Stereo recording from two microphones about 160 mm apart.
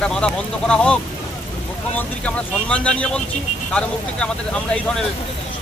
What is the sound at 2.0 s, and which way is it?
Speech, 10° left (ahead or behind).